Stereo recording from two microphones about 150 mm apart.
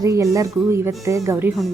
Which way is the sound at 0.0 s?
20° right (ahead or behind).